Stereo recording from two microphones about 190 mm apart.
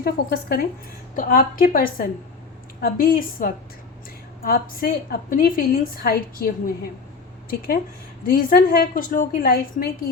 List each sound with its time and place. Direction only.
0.0 s a woman's voice: 55° left (ahead or behind)
8.3 s a woman's voice: 50° left (ahead or behind)